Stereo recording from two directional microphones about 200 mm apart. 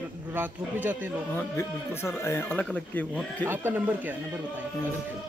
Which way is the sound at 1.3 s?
15° left (ahead or behind).